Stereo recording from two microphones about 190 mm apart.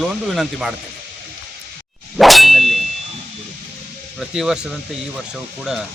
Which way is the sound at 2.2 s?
Centre (ahead or behind).